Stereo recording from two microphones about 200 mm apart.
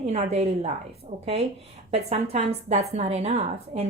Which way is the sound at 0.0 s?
35° right (ahead or behind).